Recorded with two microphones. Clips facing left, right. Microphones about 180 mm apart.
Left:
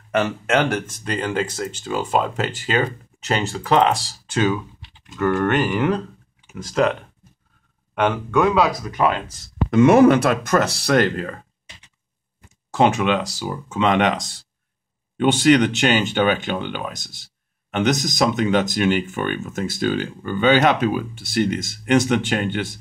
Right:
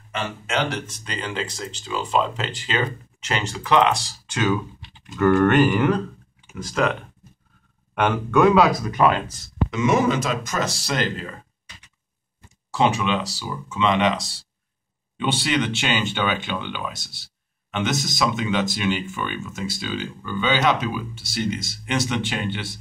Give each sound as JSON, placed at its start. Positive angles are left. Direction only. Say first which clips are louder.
{"t": 0.1, "sound": "speech", "louder": "left 7 dB", "side_deg": 60}
{"t": 5.1, "sound": "speech", "louder": "right 3 dB", "side_deg": 10}
{"t": 5.5, "sound": "speech", "louder": "right 2 dB", "side_deg": 20}
{"t": 6.6, "sound": "speech", "louder": "left 3 dB", "side_deg": 35}
{"t": 7.9, "sound": "speech", "louder": "left 1 dB", "side_deg": 0}
{"t": 9.7, "sound": "speech", "louder": "left 8 dB", "side_deg": 55}
{"t": 12.7, "sound": "speech", "louder": "left 3 dB", "side_deg": 50}
{"t": 15.1, "sound": "speech", "louder": "left 8 dB", "side_deg": 45}